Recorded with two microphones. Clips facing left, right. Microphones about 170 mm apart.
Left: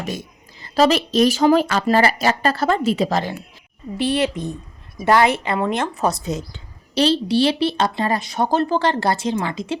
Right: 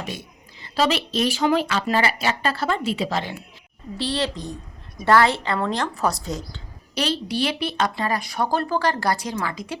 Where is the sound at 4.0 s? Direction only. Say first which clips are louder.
Left 5 dB; 20° left (ahead or behind).